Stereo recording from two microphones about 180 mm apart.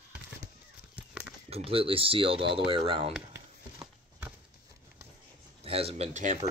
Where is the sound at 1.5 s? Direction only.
30° right (ahead or behind).